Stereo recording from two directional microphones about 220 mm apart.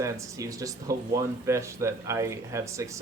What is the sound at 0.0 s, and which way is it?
Speech, 15° right (ahead or behind).